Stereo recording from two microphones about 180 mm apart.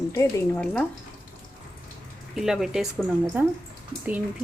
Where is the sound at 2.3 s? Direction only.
Centre (ahead or behind).